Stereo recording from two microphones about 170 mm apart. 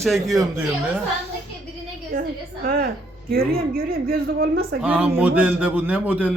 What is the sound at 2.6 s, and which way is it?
Speech, 60° right (ahead or behind).